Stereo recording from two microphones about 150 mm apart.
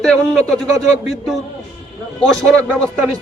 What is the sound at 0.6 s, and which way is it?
Speech, 20° right (ahead or behind).